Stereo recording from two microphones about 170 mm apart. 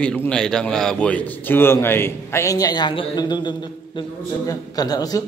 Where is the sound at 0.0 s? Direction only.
10° left (ahead or behind).